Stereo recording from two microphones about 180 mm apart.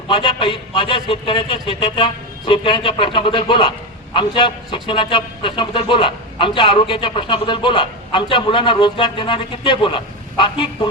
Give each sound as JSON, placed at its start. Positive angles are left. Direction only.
{"t": 0.1, "sound": "a man's voice", "side_deg": 30}